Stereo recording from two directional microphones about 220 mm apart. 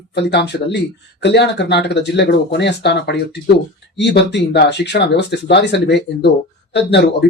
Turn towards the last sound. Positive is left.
turn(degrees=50)  # may be behind; listen again after turning